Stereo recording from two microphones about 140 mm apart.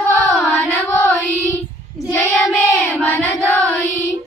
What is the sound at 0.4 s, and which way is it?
Music, 5° left (ahead or behind).